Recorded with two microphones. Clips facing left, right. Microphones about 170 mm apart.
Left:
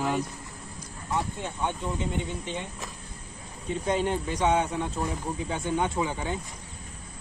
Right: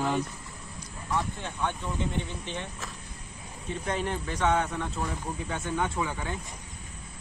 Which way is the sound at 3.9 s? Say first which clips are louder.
Left 4 dB; 20° left (ahead or behind).